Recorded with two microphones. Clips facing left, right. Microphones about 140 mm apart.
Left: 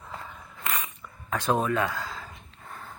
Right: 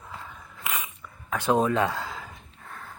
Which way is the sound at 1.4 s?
15° right (ahead or behind).